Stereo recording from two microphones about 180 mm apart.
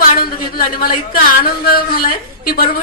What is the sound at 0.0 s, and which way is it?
Speech, 50° left (ahead or behind).